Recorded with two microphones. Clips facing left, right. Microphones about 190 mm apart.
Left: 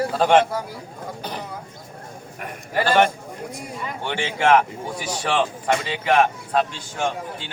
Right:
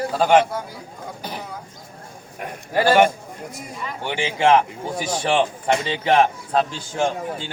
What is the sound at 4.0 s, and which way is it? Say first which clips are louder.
Speech: right 2 dB; 15° right (ahead or behind).